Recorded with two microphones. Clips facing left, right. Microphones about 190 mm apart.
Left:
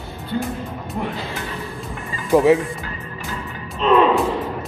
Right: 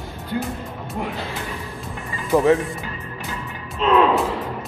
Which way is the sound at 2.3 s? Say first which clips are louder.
Left 2 dB; 15° left (ahead or behind).